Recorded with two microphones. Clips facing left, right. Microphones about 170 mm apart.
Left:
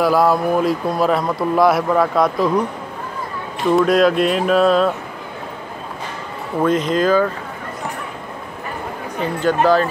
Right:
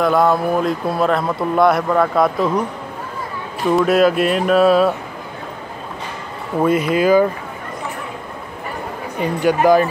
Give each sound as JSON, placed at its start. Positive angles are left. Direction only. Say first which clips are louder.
{"t": 0.0, "sound": "speech", "louder": "even", "side_deg": 5}
{"t": 3.7, "sound": "speech", "louder": "even", "side_deg": -5}
{"t": 6.6, "sound": "speech", "louder": "right 1 dB", "side_deg": -10}
{"t": 9.2, "sound": "speech", "louder": "right 2 dB", "side_deg": -10}